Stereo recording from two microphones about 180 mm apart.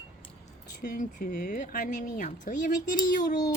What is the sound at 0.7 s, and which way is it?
A woman's voice, 55° left (ahead or behind).